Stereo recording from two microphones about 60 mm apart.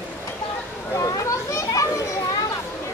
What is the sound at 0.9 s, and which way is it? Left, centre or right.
Children playing, left.